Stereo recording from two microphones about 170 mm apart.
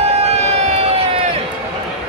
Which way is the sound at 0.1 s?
35° right (ahead or behind).